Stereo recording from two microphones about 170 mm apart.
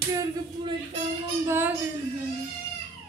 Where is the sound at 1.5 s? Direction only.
10° right (ahead or behind).